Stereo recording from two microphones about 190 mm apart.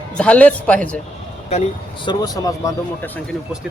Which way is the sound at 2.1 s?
20° left (ahead or behind).